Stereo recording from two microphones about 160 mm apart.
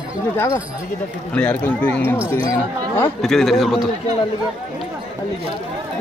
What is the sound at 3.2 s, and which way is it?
Speech, centre (ahead or behind).